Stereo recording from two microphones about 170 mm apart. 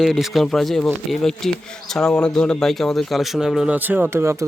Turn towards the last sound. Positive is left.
turn(degrees=-15)  # may be behind; listen again after turning